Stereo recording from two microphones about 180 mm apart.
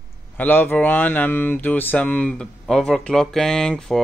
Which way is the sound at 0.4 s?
10° left (ahead or behind).